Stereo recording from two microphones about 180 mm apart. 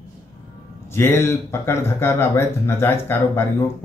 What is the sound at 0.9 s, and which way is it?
Speech, 15° left (ahead or behind).